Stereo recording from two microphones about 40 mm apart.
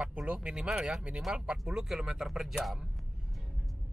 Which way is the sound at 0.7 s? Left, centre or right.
Centre.